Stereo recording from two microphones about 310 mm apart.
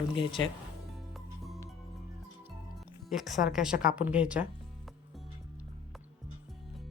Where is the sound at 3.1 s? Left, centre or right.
Centre.